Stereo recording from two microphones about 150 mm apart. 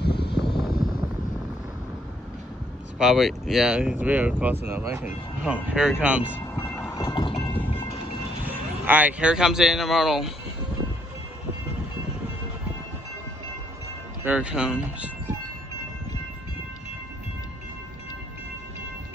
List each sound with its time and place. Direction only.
0.0 s a sound: 90° left
0.5 s a sound: 30° left (ahead or behind)
3.0 s speech: centre (ahead or behind)
6.6 s train: 15° left (ahead or behind); by 7.4 s 30° left (ahead or behind)
8.5 s speech: 10° right (ahead or behind)
14.2 s speech: 10° right (ahead or behind)